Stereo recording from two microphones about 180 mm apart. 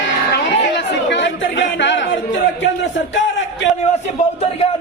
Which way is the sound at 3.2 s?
90° left.